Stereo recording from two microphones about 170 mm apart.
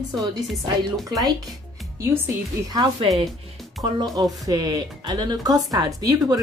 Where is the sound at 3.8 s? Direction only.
25° right (ahead or behind).